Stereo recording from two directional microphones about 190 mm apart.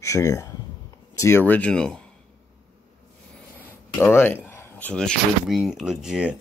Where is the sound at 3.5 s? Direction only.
10° left (ahead or behind).